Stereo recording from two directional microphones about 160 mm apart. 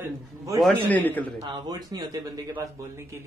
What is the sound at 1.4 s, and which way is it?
Speech, 25° right (ahead or behind).